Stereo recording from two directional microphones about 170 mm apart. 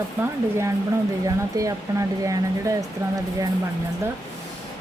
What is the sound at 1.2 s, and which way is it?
Speech, 20° right (ahead or behind).